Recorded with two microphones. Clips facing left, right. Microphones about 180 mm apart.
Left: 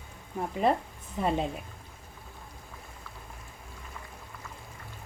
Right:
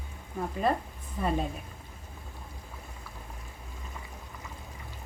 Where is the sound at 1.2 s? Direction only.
20° left (ahead or behind).